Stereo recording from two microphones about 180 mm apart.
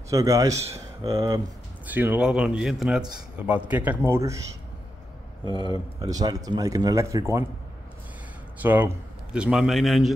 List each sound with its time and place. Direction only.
0.1 s a man's voice: 20° right (ahead or behind)
5.9 s speech: 20° right (ahead or behind)
8.6 s a man's voice: 10° right (ahead or behind)